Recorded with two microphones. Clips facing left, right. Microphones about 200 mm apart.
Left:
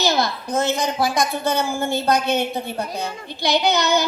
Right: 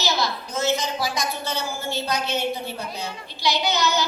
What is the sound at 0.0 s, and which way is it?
A woman's voice, 55° left (ahead or behind).